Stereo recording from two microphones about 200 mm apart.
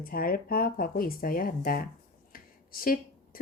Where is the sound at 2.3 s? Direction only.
45° left (ahead or behind).